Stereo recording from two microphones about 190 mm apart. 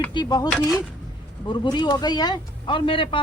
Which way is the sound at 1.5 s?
25° left (ahead or behind).